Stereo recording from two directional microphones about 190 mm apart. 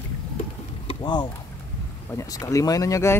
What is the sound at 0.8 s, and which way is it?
Vehicle, 25° left (ahead or behind).